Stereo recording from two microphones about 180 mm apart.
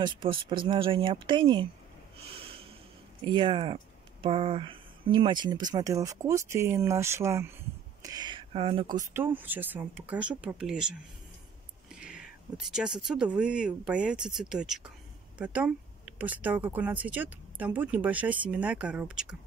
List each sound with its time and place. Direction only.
0.0 s speech: 25° right (ahead or behind)
3.3 s speech: 30° right (ahead or behind)
9.1 s speech: 10° right (ahead or behind)